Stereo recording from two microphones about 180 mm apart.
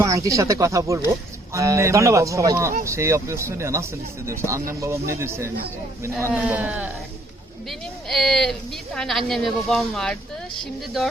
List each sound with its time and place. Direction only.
0.0 s speech: 15° right (ahead or behind)
7.7 s a woman's voice: 5° left (ahead or behind)